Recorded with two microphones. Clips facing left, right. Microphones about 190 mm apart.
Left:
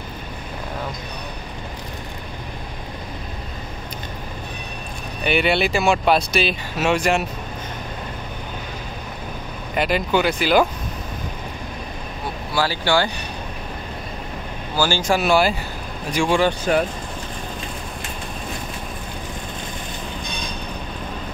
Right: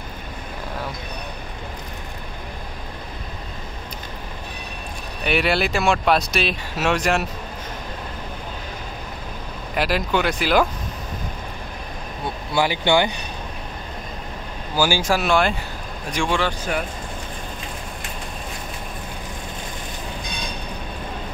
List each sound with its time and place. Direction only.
5.2 s speech: centre (ahead or behind)
9.8 s speech: centre (ahead or behind)
12.5 s speech: 20° right (ahead or behind)
14.8 s speech: 10° right (ahead or behind); by 16.5 s 10° left (ahead or behind)